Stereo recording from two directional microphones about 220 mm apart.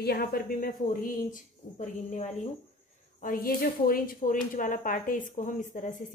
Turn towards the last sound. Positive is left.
turn(degrees=35)  # may be behind; listen again after turning